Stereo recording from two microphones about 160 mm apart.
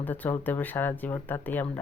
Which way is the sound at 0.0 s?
10° left (ahead or behind).